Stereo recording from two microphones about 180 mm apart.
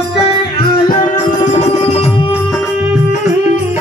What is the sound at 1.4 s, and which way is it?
Music, 35° left (ahead or behind).